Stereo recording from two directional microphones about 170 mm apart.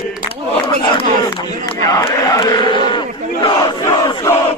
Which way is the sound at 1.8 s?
20° left (ahead or behind).